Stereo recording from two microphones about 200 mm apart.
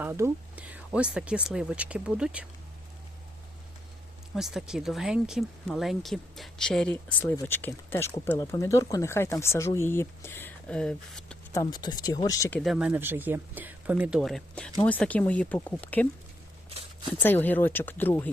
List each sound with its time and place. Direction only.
0.0 s speech: 10° right (ahead or behind)
4.4 s speech: centre (ahead or behind)
11.5 s speech: 20° left (ahead or behind)
12.5 s speech: centre (ahead or behind)
17.2 s speech: 10° left (ahead or behind)